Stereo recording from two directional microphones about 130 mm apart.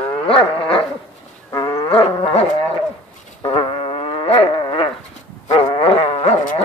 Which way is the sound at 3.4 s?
45° left (ahead or behind).